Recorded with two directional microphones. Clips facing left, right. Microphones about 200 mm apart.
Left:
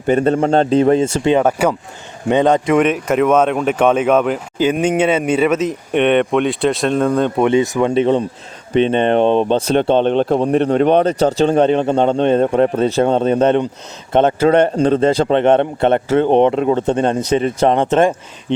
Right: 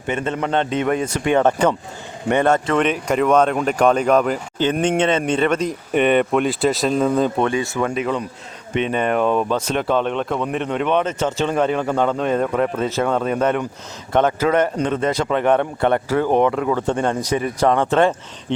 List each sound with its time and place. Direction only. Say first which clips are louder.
0.1 s speech: left 8 dB; 35° left (ahead or behind)
1.4 s speech: left 1 dB; 10° left (ahead or behind)
7.4 s speech: left 6 dB; 20° left (ahead or behind)
7.9 s a man's voice: left 8 dB; 30° left (ahead or behind)